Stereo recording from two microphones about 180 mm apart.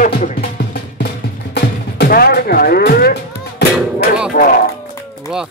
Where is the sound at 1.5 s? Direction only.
60° left (ahead or behind).